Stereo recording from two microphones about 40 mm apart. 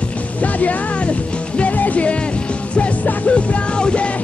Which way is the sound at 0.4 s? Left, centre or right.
Left.